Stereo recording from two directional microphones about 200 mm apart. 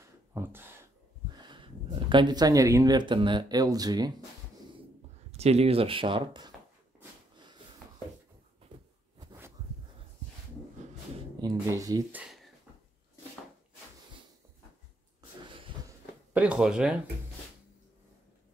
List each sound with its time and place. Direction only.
0.3 s speech: 10° right (ahead or behind)
1.3 s speech: 20° right (ahead or behind)
5.3 s speech: 30° right (ahead or behind)
9.2 s a sound: 20° right (ahead or behind)
11.4 s speech: 20° right (ahead or behind)
12.2 s a sound: centre (ahead or behind)
16.3 s speech: 5° right (ahead or behind)